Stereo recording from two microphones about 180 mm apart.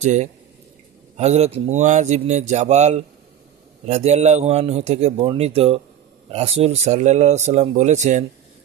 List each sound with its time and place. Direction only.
0.0 s speech: 40° right (ahead or behind)